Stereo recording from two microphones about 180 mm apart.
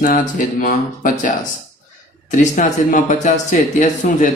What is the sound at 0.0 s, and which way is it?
Speech, 45° left (ahead or behind).